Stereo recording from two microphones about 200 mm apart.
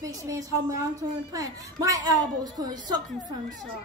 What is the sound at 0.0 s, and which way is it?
A woman's voice, 15° right (ahead or behind).